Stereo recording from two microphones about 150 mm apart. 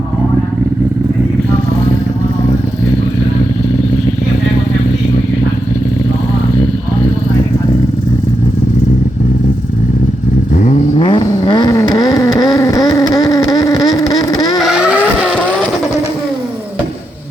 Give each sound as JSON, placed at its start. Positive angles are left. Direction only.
{"t": 10.5, "sound": "vehicle", "side_deg": 55}
{"t": 10.9, "sound": "vehicle", "side_deg": 35}
{"t": 14.6, "sound": "vehicle", "side_deg": -5}